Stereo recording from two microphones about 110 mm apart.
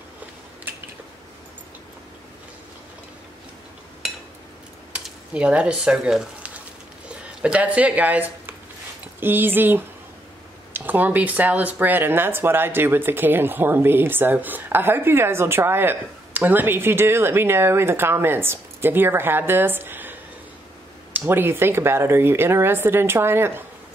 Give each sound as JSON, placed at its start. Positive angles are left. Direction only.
{"t": 5.0, "sound": "speech", "side_deg": -10}